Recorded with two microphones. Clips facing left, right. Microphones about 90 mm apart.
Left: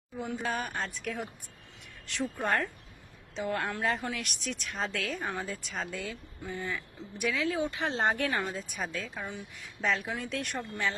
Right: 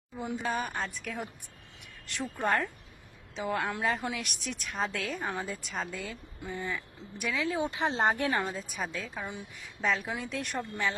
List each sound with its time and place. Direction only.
0.3 s a woman's voice: centre (ahead or behind)
7.5 s speech: 25° right (ahead or behind)
7.9 s speech: 5° right (ahead or behind)
8.3 s speech: 20° right (ahead or behind)
8.5 s a woman's voice: centre (ahead or behind)